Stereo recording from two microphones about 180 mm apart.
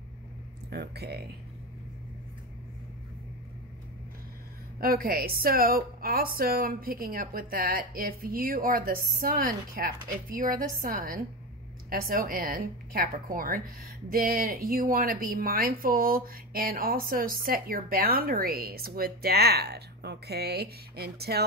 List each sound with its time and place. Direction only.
0.7 s speech: 65° right (ahead or behind)
4.7 s a woman's voice: 55° right (ahead or behind)